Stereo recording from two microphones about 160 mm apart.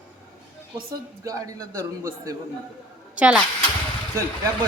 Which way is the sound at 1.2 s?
20° right (ahead or behind).